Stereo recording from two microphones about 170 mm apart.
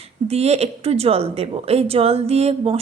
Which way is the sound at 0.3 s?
40° right (ahead or behind).